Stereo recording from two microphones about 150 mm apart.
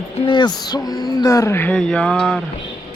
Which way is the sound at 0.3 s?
30° left (ahead or behind).